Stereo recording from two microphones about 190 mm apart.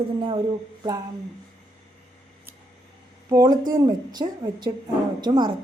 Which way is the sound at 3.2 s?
20° right (ahead or behind).